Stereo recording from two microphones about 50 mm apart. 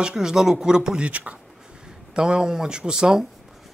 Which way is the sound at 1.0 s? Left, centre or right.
Right.